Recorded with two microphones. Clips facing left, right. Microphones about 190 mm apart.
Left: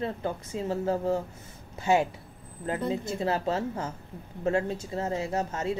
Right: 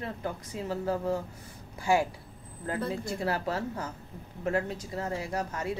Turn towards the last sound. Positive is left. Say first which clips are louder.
# left 3 dB
turn(degrees=25)  # may be behind; listen again after turning